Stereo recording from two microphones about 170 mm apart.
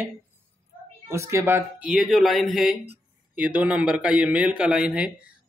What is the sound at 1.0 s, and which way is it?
Speech, 15° right (ahead or behind).